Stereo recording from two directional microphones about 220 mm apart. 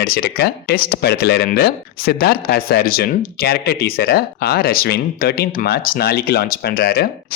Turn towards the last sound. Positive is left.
turn(degrees=45)  # may be behind; listen again after turning